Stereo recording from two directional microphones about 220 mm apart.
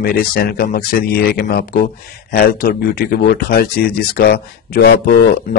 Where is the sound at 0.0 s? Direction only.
45° left (ahead or behind).